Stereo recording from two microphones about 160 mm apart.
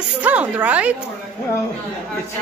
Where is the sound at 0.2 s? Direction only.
10° right (ahead or behind).